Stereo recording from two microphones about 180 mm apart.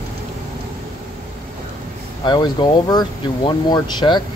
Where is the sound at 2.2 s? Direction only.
25° left (ahead or behind).